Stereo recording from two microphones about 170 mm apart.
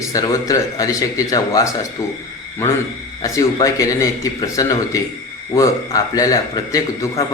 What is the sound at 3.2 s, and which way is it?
A man's voice, 20° left (ahead or behind).